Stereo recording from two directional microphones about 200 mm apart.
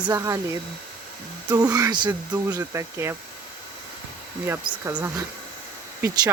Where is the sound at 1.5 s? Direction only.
15° right (ahead or behind).